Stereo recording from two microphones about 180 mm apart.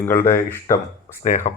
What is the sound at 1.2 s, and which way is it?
Speech, 45° left (ahead or behind).